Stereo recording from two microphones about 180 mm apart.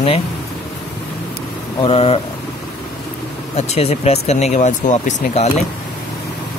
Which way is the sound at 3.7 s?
35° left (ahead or behind).